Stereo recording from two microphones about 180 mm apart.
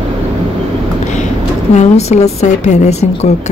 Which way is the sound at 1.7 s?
35° left (ahead or behind).